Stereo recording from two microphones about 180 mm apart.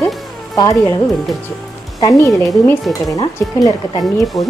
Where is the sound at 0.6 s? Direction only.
20° left (ahead or behind).